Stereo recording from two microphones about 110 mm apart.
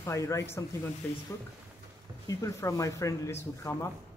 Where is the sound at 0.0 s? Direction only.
25° left (ahead or behind).